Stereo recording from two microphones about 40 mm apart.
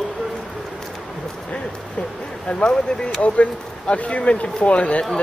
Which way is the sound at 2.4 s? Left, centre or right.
Left.